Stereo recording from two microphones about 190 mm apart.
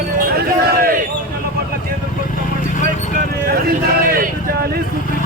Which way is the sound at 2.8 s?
50° right (ahead or behind).